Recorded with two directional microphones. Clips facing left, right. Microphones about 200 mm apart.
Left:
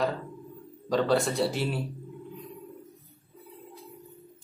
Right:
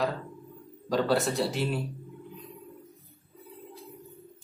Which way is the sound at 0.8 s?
Centre (ahead or behind).